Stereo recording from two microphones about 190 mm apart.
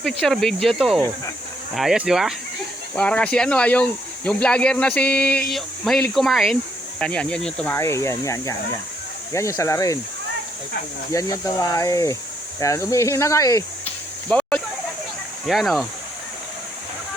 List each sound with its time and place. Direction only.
0.0 s speech: centre (ahead or behind)
11.1 s speech: 15° left (ahead or behind)
14.3 s a sound: 5° left (ahead or behind)
15.4 s speech: centre (ahead or behind)